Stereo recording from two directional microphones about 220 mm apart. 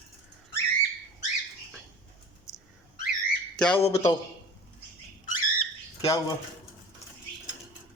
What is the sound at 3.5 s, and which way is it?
Speech, 5° left (ahead or behind).